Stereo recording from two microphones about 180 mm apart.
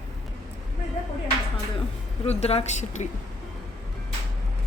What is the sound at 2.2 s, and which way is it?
Speech, 35° left (ahead or behind).